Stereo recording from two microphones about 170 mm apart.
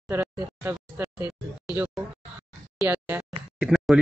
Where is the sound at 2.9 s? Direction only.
10° right (ahead or behind).